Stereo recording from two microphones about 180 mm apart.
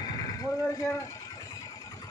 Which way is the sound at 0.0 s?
20° left (ahead or behind).